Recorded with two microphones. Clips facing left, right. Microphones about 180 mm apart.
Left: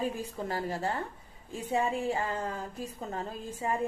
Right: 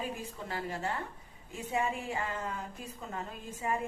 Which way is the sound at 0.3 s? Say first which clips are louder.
Left 5 dB; 40° left (ahead or behind).